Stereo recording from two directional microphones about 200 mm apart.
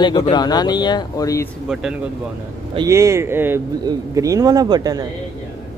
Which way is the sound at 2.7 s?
15° right (ahead or behind).